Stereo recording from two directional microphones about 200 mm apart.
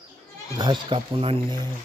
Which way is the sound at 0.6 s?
25° right (ahead or behind).